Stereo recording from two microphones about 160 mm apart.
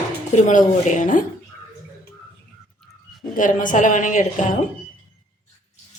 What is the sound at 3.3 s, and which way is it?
A woman's voice, 55° left (ahead or behind).